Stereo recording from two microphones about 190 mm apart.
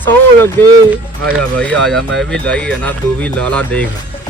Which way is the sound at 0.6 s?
10° left (ahead or behind).